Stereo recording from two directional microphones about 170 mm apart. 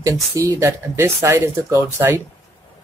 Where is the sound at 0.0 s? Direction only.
20° right (ahead or behind).